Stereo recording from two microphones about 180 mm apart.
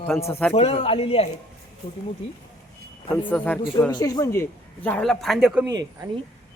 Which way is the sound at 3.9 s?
20° left (ahead or behind).